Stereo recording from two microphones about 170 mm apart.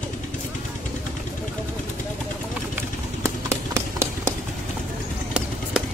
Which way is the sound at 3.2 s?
15° right (ahead or behind).